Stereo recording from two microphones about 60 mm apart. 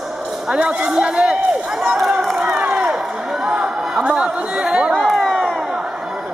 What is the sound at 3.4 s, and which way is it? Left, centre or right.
Chatter, centre.